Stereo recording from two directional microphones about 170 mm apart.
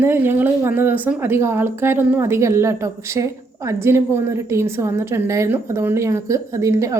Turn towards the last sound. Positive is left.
turn(degrees=-20)  # may be behind; listen again after turning